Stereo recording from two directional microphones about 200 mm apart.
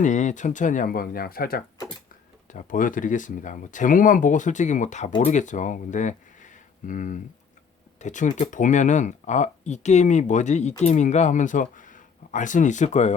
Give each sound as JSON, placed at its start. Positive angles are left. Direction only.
{"t": 0.0, "sound": "speech", "side_deg": 35}